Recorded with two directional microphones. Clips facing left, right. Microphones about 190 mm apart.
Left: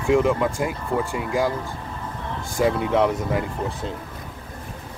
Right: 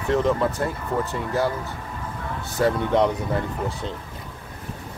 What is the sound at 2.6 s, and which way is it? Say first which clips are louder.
Speech: even; 10° left (ahead or behind).